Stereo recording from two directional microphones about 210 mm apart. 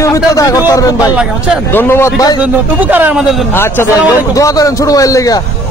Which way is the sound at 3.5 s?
10° left (ahead or behind).